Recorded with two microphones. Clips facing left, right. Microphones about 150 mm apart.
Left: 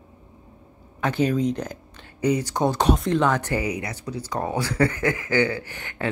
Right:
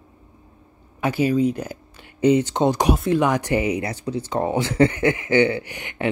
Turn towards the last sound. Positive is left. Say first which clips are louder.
# right 3 dB
turn(degrees=-15)  # may be behind; listen again after turning